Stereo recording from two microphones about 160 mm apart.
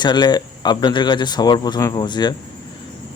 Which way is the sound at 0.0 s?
25° left (ahead or behind).